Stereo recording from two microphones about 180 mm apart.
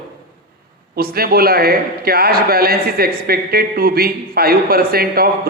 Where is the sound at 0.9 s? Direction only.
55° right (ahead or behind).